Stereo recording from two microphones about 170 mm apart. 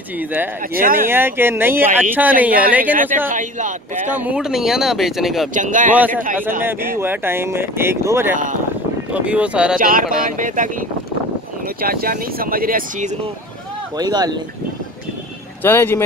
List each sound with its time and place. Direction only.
0.2 s speech: 10° right (ahead or behind)
0.7 s speech: 55° right (ahead or behind)
1.0 s speech: 15° right (ahead or behind)
3.3 s speech: 50° right (ahead or behind)
4.1 s speech: 10° right (ahead or behind)
5.5 s speech: 50° right (ahead or behind)
6.6 s speech: 10° right (ahead or behind)
9.8 s speech: 55° right (ahead or behind)
11.8 s speech: 60° right (ahead or behind)
13.9 s speech: 25° right (ahead or behind)
15.6 s speech: 10° left (ahead or behind)